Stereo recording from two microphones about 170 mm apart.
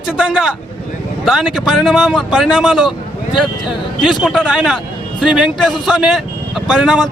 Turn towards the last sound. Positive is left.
turn(degrees=0)  # may be behind; listen again after turning